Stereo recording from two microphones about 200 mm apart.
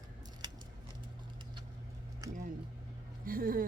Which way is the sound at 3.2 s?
45° right (ahead or behind).